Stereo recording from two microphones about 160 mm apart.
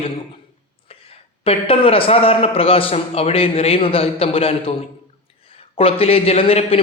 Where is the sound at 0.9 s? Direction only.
35° left (ahead or behind).